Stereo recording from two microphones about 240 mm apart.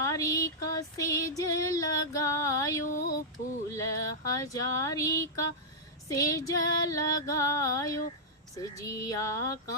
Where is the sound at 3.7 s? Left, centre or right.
Centre.